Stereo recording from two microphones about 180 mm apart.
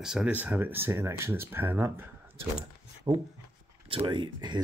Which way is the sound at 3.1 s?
15° right (ahead or behind).